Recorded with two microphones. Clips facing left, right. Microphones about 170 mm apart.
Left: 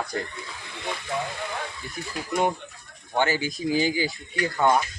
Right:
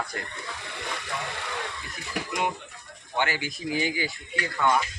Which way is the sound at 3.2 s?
40° left (ahead or behind).